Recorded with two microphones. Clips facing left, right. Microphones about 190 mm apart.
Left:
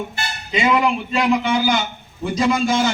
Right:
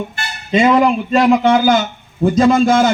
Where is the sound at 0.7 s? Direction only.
45° right (ahead or behind).